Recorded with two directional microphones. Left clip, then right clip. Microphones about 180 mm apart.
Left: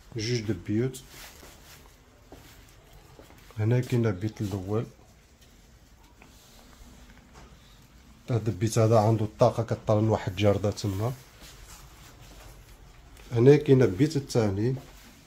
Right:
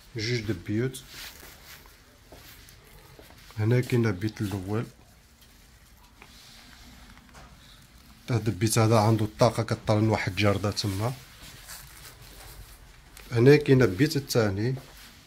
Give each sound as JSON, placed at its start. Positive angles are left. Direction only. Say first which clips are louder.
{"t": 0.1, "sound": "speech", "louder": "even", "side_deg": 20}
{"t": 3.5, "sound": "speech", "louder": "right 2 dB", "side_deg": 0}
{"t": 8.3, "sound": "speech", "louder": "right 2 dB", "side_deg": -5}
{"t": 13.3, "sound": "speech", "louder": "even", "side_deg": 0}